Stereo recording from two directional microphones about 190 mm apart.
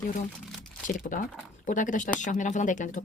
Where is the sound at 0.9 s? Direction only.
45° left (ahead or behind).